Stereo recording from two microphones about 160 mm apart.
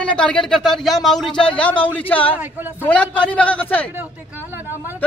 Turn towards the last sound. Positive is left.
turn(degrees=-15)  # may be behind; listen again after turning